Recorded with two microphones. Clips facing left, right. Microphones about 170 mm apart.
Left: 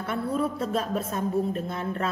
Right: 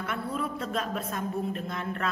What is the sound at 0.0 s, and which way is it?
A woman's voice, 35° left (ahead or behind).